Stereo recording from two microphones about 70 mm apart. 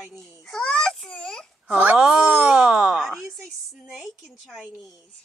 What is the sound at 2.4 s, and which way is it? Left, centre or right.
Groan, centre.